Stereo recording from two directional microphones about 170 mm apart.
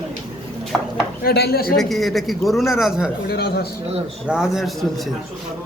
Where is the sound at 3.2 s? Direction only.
65° left (ahead or behind).